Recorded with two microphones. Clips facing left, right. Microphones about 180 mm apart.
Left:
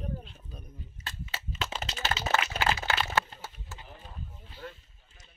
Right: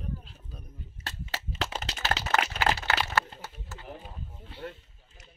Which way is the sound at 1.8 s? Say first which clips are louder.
Right 1 dB; 70° right (ahead or behind).